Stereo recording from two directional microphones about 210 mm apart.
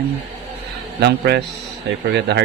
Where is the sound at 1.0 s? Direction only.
55° right (ahead or behind).